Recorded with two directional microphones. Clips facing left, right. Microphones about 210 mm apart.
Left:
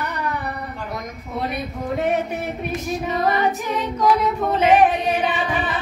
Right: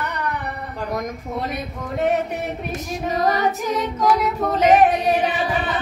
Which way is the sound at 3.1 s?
40° right (ahead or behind).